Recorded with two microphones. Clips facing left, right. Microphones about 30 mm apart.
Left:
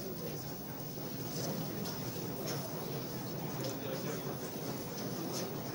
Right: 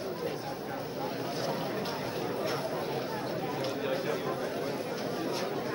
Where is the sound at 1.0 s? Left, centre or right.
Right.